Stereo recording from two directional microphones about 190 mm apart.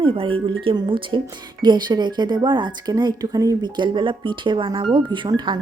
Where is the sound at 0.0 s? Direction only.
30° right (ahead or behind).